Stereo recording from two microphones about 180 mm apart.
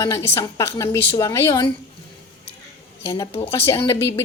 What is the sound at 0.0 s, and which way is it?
A woman's voice, 15° left (ahead or behind).